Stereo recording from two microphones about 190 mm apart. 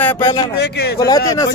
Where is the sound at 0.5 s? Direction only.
60° left (ahead or behind).